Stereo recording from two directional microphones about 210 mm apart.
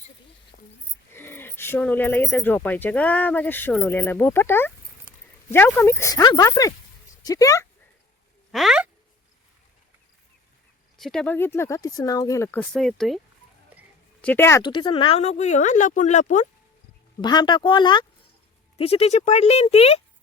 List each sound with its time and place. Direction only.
0.5 s a sound: 40° left (ahead or behind)
1.1 s speech: 10° left (ahead or behind)
8.5 s speech: 5° right (ahead or behind)
11.0 s speech: 5° left (ahead or behind)
14.2 s speech: 10° left (ahead or behind); by 16.5 s 40° left (ahead or behind)
17.2 s speech: 20° left (ahead or behind)